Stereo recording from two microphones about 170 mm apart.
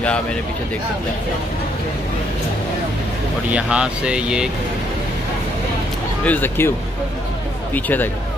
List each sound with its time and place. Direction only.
3.5 s speech: 5° right (ahead or behind)
6.2 s speech: 10° left (ahead or behind)
7.7 s speech: 10° left (ahead or behind)